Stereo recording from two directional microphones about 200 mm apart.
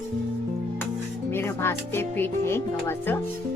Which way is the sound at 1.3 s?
10° left (ahead or behind).